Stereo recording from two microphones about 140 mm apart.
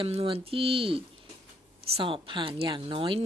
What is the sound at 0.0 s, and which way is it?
Speech, 40° right (ahead or behind).